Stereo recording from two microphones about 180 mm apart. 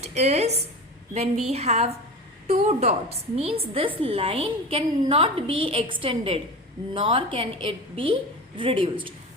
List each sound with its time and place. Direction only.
0.0 s a woman's voice: 40° right (ahead or behind)